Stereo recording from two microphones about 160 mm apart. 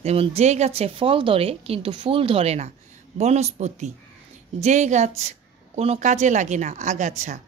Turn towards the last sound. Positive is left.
turn(degrees=-50)  # may be behind; listen again after turning